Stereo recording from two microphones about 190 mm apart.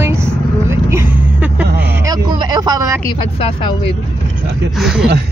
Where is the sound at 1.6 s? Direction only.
60° right (ahead or behind).